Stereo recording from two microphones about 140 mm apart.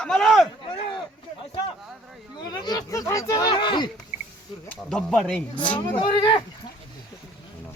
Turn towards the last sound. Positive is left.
turn(degrees=35)  # may be behind; listen again after turning